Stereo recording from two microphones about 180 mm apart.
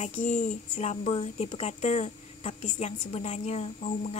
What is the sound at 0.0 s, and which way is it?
Speech, 40° left (ahead or behind).